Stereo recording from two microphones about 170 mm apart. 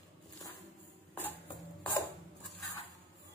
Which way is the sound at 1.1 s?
10° left (ahead or behind).